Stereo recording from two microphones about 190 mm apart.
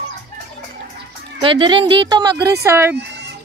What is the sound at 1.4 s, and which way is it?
A woman's voice, 25° right (ahead or behind).